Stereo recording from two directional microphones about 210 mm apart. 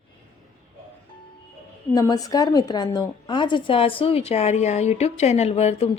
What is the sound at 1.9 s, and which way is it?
A woman's voice, 15° left (ahead or behind).